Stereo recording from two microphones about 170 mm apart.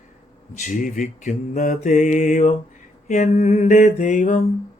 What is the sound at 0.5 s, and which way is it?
Mantra, 50° left (ahead or behind).